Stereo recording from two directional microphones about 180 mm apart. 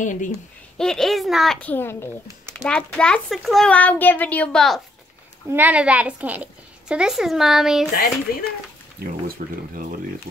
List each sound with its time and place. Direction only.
0.0 s speech: 45° left (ahead or behind)
0.7 s a woman's voice: 5° left (ahead or behind)
5.5 s a woman's voice: 10° right (ahead or behind)
7.9 s speech: 50° left (ahead or behind)
9.4 s speech: 50° right (ahead or behind)